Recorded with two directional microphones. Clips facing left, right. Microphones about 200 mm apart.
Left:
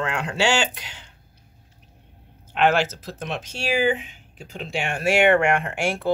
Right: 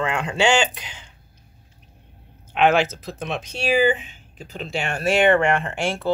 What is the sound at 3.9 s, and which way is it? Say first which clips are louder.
Speech: right 1 dB; 10° left (ahead or behind).